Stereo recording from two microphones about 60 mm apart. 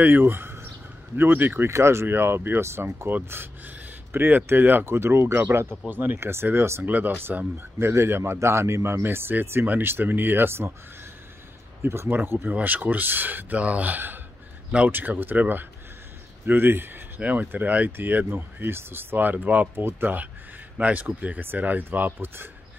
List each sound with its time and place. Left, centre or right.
0.0 s speech: right
1.7 s speech: right
6.8 s speech: right
7.5 s speech: right
9.0 s speech: right
11.8 s speech: right
12.5 s speech: right
20.7 s speech: right